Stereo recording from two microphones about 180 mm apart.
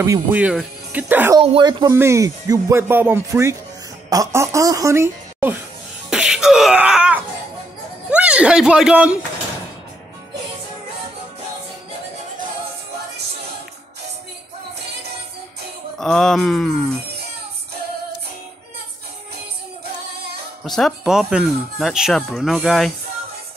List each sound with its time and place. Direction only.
0.0 s speech: 10° right (ahead or behind)
1.4 s speech: 30° right (ahead or behind); by 5.6 s 10° right (ahead or behind)
6.0 s music: 5° right (ahead or behind)
8.1 s speech: 5° right (ahead or behind)
16.0 s speech: centre (ahead or behind)
20.6 s speech: centre (ahead or behind)